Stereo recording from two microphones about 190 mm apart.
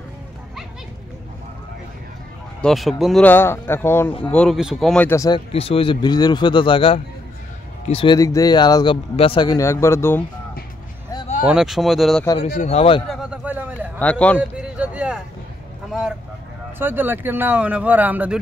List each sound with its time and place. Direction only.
2.6 s speech: centre (ahead or behind); by 5.4 s 15° left (ahead or behind)
5.5 s a man's voice: 30° left (ahead or behind); by 10.2 s 15° left (ahead or behind)
11.4 s speech: centre (ahead or behind)
12.4 s speech: 35° left (ahead or behind)
13.1 s a sound: 5° right (ahead or behind)
13.9 s speech: 5° left (ahead or behind)
14.6 s a sound: 5° right (ahead or behind)
16.7 s speech: 10° right (ahead or behind)